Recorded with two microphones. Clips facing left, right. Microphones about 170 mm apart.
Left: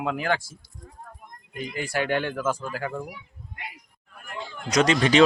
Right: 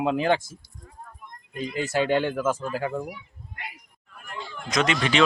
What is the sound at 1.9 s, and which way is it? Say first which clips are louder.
Speech: right 3 dB; 20° right (ahead or behind).